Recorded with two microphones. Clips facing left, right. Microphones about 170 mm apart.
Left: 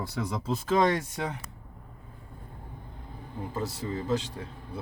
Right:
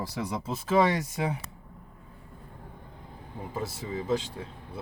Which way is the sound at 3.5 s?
10° right (ahead or behind).